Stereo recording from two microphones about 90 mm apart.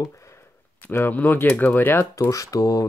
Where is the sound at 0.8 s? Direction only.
20° left (ahead or behind).